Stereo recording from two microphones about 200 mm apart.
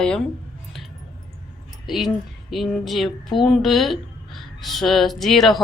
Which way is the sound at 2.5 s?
Centre (ahead or behind).